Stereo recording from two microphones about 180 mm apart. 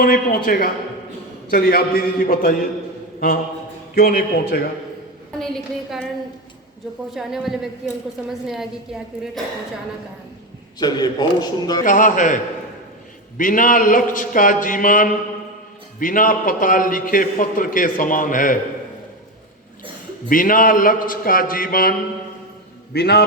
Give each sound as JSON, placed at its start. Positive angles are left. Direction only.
{"t": 0.0, "sound": "a man's voice", "side_deg": 55}
{"t": 3.2, "sound": "a sound", "side_deg": 55}
{"t": 3.9, "sound": "a man's voice", "side_deg": 55}
{"t": 5.4, "sound": "a woman's voice", "side_deg": 0}
{"t": 7.1, "sound": "a woman's voice", "side_deg": 0}
{"t": 10.8, "sound": "a man's voice", "side_deg": 20}
{"t": 11.9, "sound": "a man's voice", "side_deg": 50}
{"t": 20.3, "sound": "a man's voice", "side_deg": 50}